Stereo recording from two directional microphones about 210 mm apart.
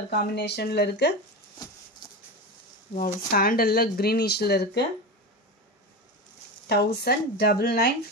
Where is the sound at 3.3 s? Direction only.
45° left (ahead or behind).